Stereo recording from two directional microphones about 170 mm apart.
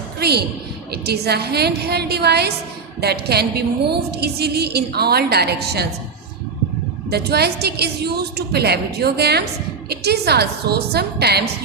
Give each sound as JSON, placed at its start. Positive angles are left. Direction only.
{"t": 0.2, "sound": "a woman's voice", "side_deg": -70}
{"t": 7.1, "sound": "a woman's voice", "side_deg": -70}